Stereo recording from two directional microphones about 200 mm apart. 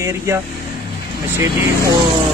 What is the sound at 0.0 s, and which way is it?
Speech, 15° right (ahead or behind).